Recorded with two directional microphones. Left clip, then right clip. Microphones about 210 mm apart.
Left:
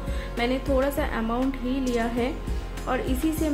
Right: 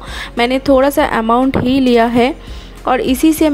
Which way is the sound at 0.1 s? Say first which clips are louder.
Right 12 dB; 50° right (ahead or behind).